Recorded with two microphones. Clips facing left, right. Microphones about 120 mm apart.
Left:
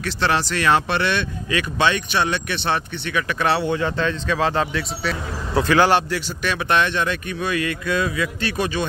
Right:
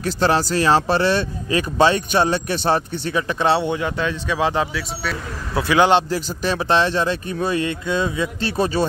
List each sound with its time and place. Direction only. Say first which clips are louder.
0.0 s speech: right 3 dB; 40° right (ahead or behind); by 4.6 s 15° right (ahead or behind)
4.7 s speech: left 1 dB; 5° right (ahead or behind)
5.8 s speech: right 3 dB; 20° right (ahead or behind)
6.0 s speech: right 2 dB; 35° right (ahead or behind)